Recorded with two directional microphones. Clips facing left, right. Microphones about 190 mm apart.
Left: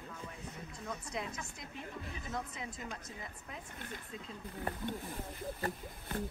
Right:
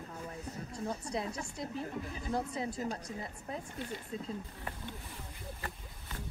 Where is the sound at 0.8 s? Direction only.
30° right (ahead or behind).